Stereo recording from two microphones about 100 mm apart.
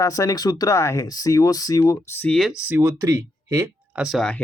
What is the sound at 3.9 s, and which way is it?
Speech, 5° right (ahead or behind).